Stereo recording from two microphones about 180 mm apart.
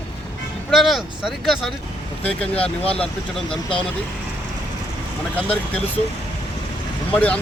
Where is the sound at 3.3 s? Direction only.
5° left (ahead or behind).